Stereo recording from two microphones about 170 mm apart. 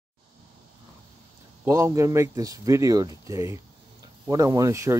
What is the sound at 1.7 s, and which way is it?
Speech, 20° right (ahead or behind).